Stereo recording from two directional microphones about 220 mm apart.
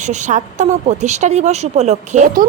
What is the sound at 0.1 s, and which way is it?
A woman's voice, 35° right (ahead or behind).